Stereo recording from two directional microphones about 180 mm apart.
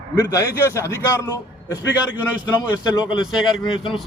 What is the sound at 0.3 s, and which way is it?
Speech, 20° left (ahead or behind).